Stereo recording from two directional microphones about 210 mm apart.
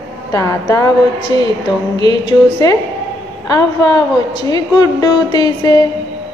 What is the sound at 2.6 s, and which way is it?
A woman's voice, 15° left (ahead or behind).